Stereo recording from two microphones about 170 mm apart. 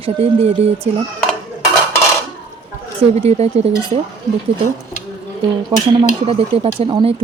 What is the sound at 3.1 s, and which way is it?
Speech, 40° right (ahead or behind).